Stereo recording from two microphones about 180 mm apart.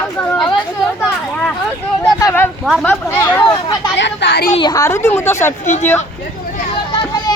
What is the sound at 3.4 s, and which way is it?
Speech, 25° left (ahead or behind).